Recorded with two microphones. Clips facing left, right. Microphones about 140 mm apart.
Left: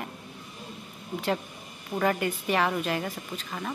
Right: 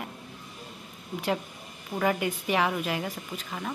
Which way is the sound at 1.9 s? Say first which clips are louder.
Left 1 dB; 10° right (ahead or behind).